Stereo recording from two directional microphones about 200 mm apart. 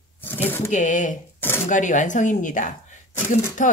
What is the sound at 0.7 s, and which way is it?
Speech, 40° left (ahead or behind).